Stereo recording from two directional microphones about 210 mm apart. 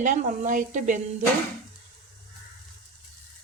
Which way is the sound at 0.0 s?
35° right (ahead or behind).